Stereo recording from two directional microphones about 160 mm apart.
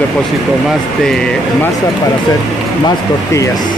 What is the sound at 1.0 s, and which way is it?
Speech, 5° left (ahead or behind).